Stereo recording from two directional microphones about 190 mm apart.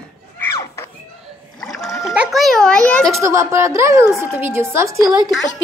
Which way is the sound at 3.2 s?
15° right (ahead or behind).